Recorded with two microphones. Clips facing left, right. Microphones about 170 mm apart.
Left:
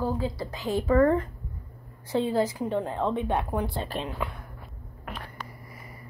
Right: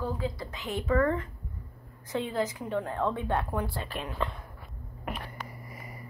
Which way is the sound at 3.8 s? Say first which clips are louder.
Left 4 dB; 35° left (ahead or behind).